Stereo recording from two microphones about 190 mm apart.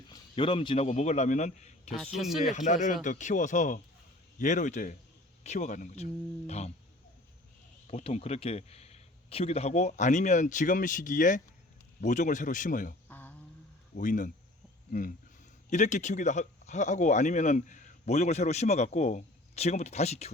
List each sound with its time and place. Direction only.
0.1 s a man's voice: 30° left (ahead or behind)
2.1 s speech: centre (ahead or behind)
2.5 s speech: 40° left (ahead or behind)
7.9 s speech: 30° left (ahead or behind)
13.1 s a sound: 10° left (ahead or behind)
13.9 s speech: 45° left (ahead or behind)
15.7 s speech: 40° left (ahead or behind)